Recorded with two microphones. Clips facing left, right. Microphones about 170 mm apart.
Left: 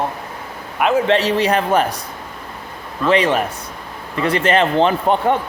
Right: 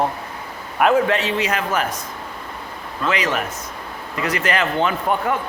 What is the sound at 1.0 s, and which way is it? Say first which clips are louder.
Speech: left 5 dB; 35° left (ahead or behind).